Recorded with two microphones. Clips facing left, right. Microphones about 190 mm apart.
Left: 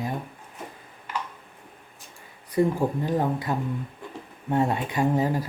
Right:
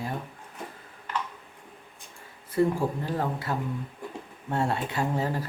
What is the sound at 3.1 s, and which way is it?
Speech, 15° left (ahead or behind).